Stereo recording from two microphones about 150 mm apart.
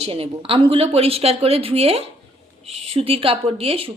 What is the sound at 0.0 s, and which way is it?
Speech, 40° right (ahead or behind).